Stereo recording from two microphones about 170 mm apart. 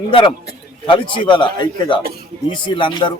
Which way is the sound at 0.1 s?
30° left (ahead or behind).